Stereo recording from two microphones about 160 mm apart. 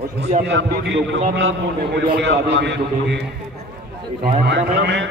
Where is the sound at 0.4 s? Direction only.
90° right.